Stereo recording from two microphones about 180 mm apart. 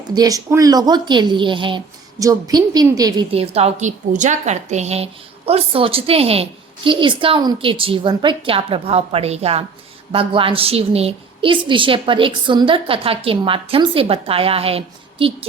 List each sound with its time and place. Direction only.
0.1 s speech: 20° right (ahead or behind)
3.3 s a woman's voice: 35° right (ahead or behind)